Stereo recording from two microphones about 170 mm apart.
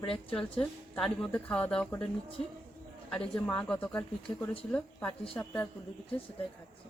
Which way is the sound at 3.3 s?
5° left (ahead or behind).